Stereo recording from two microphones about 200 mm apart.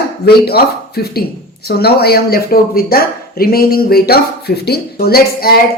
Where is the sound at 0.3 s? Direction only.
50° left (ahead or behind).